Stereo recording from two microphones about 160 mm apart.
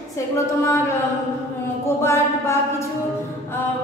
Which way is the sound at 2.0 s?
15° left (ahead or behind).